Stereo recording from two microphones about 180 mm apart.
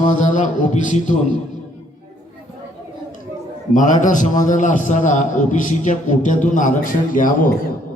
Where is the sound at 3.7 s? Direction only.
45° left (ahead or behind).